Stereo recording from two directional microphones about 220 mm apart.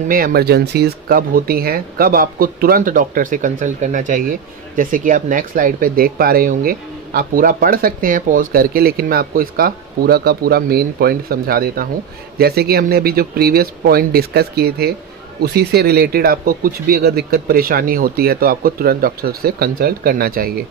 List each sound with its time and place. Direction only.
0.1 s speech: 45° right (ahead or behind)